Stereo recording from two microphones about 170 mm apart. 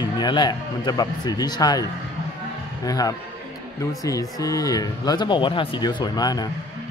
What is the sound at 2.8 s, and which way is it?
Speech, 20° left (ahead or behind).